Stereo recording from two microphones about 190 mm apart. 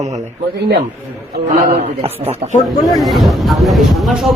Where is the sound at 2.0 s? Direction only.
35° right (ahead or behind).